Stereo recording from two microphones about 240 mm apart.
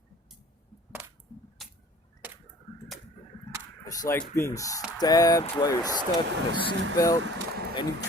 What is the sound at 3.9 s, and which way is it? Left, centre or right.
Speech, centre.